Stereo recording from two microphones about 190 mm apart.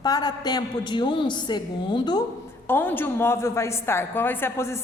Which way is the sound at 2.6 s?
10° left (ahead or behind).